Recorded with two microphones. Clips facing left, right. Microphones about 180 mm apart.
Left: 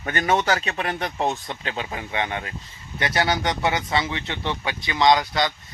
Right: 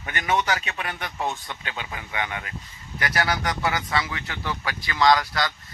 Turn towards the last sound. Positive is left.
turn(degrees=20)  # may be behind; listen again after turning